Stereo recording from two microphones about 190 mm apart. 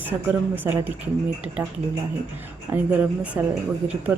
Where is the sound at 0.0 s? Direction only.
10° right (ahead or behind).